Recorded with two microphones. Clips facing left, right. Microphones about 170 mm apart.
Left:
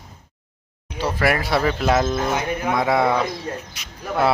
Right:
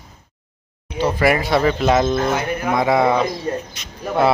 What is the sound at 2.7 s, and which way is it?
Speech, centre (ahead or behind).